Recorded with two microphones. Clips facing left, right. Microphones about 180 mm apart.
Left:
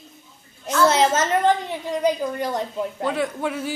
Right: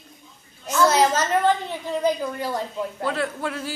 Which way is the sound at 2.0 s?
20° left (ahead or behind).